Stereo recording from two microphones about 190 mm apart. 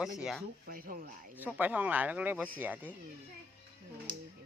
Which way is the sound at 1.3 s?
10° right (ahead or behind).